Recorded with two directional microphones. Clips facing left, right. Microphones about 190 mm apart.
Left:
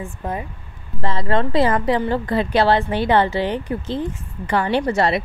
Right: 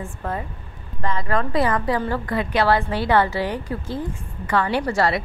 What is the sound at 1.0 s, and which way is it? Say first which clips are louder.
A woman's voice: left 3 dB; 30° left (ahead or behind).